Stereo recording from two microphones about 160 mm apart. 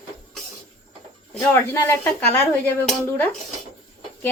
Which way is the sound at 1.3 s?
15° left (ahead or behind).